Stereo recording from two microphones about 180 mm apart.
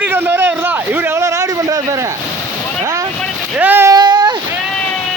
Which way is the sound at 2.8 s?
15° right (ahead or behind).